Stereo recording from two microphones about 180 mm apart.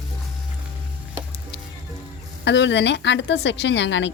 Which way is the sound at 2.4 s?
80° left.